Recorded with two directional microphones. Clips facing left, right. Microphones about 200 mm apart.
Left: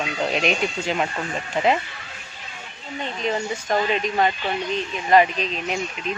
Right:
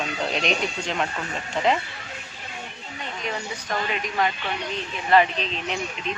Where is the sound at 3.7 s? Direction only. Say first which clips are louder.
Left 5 dB; 25° left (ahead or behind).